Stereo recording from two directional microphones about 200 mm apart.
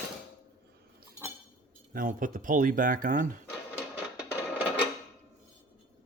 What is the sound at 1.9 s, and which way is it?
Speech, 45° right (ahead or behind).